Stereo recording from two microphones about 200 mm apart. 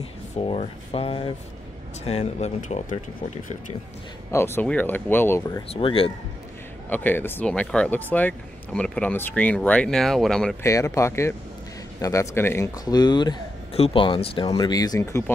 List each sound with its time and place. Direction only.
0.4 s speech: 30° left (ahead or behind)
4.3 s speech: 10° left (ahead or behind)
5.7 s speech: 25° left (ahead or behind)
6.9 s speech: 10° left (ahead or behind)
10.6 s speech: 15° left (ahead or behind)